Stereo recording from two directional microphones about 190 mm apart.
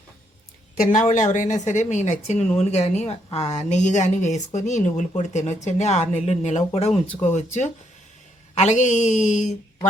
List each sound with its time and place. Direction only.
0.8 s a woman's voice: 40° left (ahead or behind)